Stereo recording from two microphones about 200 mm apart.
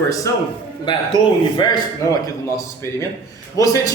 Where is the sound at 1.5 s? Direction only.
20° left (ahead or behind).